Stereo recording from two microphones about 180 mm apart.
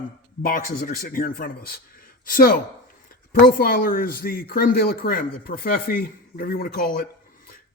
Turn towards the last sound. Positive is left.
turn(degrees=55)  # may be behind; listen again after turning